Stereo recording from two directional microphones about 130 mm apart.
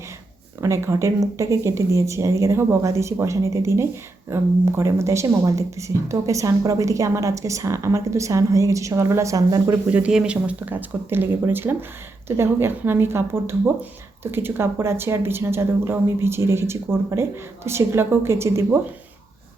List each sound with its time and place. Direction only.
0.6 s speech: 20° right (ahead or behind)
9.9 s speech: 10° right (ahead or behind)